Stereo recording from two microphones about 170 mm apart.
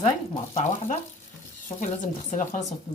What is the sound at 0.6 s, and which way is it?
A woman's voice, 40° left (ahead or behind).